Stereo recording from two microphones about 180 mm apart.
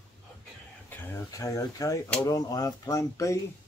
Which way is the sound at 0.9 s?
15° left (ahead or behind).